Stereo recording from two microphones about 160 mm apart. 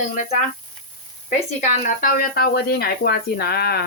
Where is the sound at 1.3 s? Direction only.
50° left (ahead or behind); by 3.8 s 80° left.